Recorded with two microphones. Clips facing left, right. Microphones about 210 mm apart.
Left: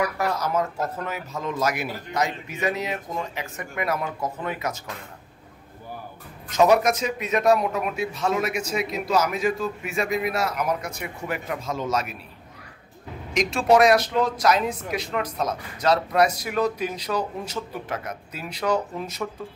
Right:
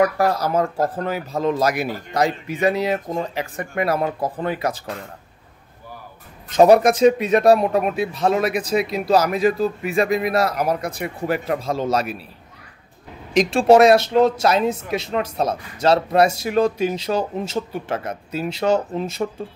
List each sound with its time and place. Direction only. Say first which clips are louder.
0.2 s speech: right 5 dB; 35° right (ahead or behind)
6.5 s speech: right 6 dB; 30° right (ahead or behind)
13.3 s speech: right 6 dB; 30° right (ahead or behind)